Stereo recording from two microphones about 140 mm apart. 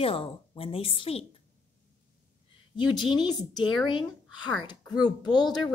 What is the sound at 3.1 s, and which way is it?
Speech, 30° left (ahead or behind).